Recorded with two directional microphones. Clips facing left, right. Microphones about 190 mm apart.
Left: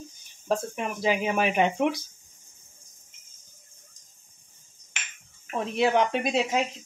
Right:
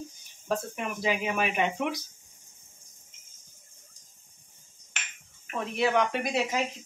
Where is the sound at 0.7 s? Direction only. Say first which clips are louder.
Left 3 dB; 30° left (ahead or behind).